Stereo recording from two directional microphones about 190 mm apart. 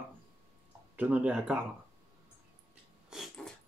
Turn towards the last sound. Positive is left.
turn(degrees=0)  # may be behind; listen again after turning